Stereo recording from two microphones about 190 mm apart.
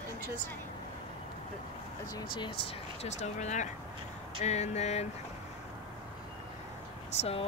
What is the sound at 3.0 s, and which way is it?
Speech, 35° left (ahead or behind).